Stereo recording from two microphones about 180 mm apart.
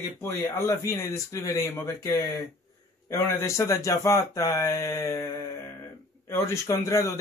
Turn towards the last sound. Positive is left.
turn(degrees=15)  # may be behind; listen again after turning